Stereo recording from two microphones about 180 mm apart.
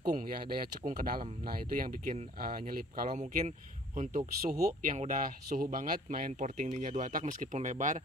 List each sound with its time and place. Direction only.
0.0 s speech: 45° right (ahead or behind)